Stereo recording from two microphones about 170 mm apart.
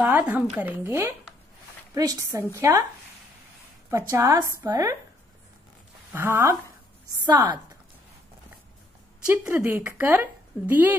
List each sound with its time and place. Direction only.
0.0 s a woman's voice: 10° right (ahead or behind)
3.9 s a woman's voice: 15° right (ahead or behind)
6.1 s a woman's voice: 15° right (ahead or behind)
9.3 s a woman's voice: 10° right (ahead or behind)